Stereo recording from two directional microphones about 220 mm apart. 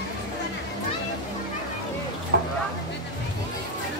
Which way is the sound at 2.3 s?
50° right (ahead or behind).